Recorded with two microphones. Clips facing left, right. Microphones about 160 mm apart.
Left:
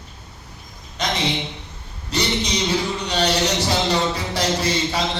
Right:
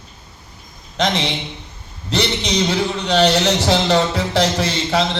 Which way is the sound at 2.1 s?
70° right (ahead or behind).